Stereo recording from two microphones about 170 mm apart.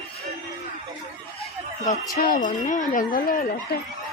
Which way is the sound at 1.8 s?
50° left (ahead or behind).